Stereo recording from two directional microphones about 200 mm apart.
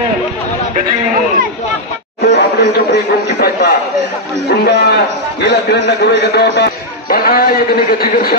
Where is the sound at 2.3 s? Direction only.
60° left (ahead or behind).